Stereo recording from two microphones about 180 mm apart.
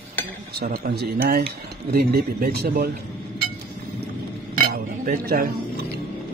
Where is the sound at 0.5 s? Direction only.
60° right (ahead or behind).